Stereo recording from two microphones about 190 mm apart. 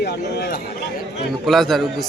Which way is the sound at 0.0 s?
60° left (ahead or behind).